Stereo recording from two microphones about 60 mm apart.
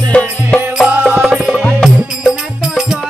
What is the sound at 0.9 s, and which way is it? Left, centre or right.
Music, right.